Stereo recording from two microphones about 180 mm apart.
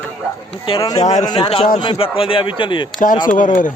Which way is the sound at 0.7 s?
30° left (ahead or behind).